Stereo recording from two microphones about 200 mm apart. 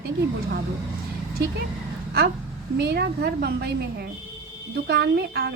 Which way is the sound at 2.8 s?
55° right (ahead or behind).